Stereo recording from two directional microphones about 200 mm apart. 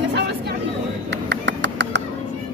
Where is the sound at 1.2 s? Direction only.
65° right (ahead or behind).